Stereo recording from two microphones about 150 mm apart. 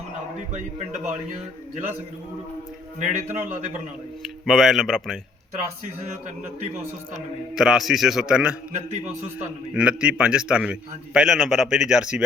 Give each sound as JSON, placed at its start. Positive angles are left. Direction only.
{"t": 3.0, "sound": "a man's voice", "side_deg": -55}
{"t": 4.4, "sound": "a man's voice", "side_deg": 0}
{"t": 7.5, "sound": "a man's voice", "side_deg": -5}
{"t": 9.7, "sound": "a man's voice", "side_deg": -5}